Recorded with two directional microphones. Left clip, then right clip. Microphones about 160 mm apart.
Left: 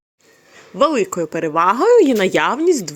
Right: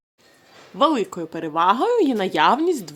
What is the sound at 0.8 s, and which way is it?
Speech, 15° left (ahead or behind).